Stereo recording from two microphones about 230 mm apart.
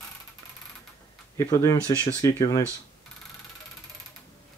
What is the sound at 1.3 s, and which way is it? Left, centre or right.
Speech, centre.